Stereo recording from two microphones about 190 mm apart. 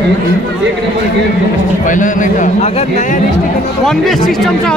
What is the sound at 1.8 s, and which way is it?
A man's voice, 45° left (ahead or behind).